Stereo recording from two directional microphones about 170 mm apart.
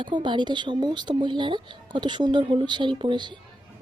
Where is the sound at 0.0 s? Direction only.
25° right (ahead or behind).